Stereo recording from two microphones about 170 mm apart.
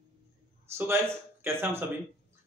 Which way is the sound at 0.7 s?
15° right (ahead or behind).